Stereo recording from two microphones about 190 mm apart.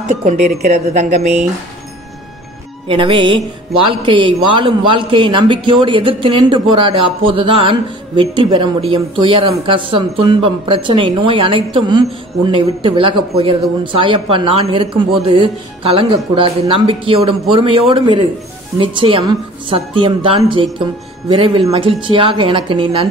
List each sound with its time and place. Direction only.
0.1 s speech: 35° right (ahead or behind)
2.9 s a man's voice: 25° right (ahead or behind)
21.7 s a man's voice: 25° right (ahead or behind)